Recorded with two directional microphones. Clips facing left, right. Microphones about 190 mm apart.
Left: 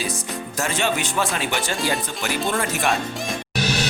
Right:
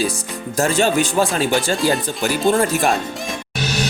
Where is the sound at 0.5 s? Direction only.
35° right (ahead or behind).